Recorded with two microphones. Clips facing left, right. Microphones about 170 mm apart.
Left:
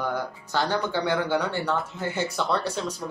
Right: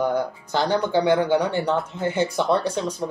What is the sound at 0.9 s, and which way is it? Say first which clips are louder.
Speech: right 6 dB; 15° right (ahead or behind).